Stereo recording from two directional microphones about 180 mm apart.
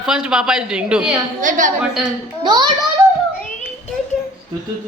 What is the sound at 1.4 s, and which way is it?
Speech, 45° right (ahead or behind).